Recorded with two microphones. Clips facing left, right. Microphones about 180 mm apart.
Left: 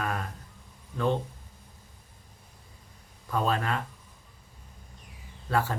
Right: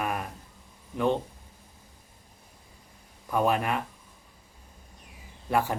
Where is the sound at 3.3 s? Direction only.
15° right (ahead or behind).